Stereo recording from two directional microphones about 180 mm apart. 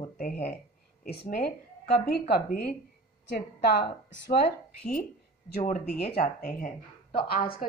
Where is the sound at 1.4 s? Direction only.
60° left (ahead or behind).